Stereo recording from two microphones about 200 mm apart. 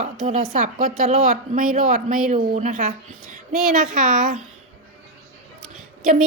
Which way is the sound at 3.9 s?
40° right (ahead or behind).